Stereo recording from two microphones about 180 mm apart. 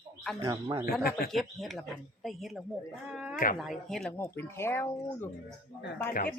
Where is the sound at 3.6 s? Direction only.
Centre (ahead or behind).